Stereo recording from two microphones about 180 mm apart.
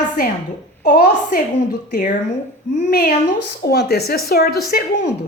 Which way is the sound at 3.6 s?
60° left (ahead or behind).